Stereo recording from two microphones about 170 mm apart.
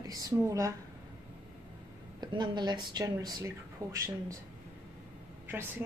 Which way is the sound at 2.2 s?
25° right (ahead or behind).